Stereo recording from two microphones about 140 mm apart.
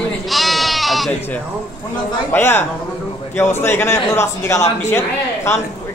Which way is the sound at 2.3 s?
15° left (ahead or behind).